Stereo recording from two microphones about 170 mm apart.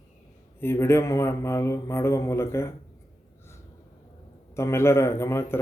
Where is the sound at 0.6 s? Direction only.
15° left (ahead or behind).